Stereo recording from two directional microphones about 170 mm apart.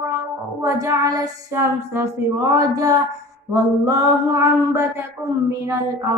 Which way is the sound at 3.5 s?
20° right (ahead or behind).